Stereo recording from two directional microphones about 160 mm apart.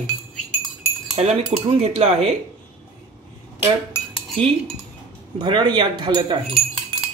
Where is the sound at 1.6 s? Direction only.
40° right (ahead or behind).